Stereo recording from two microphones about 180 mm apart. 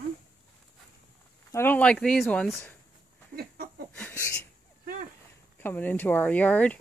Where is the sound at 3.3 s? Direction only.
60° right (ahead or behind).